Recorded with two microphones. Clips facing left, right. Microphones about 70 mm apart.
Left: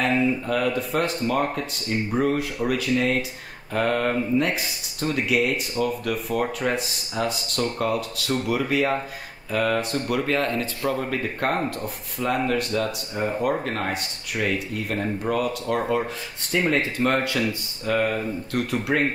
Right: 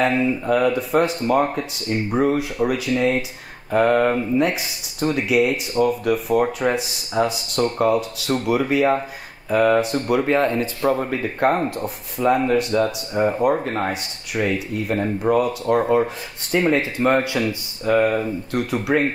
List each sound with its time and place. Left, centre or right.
0.0 s speech: centre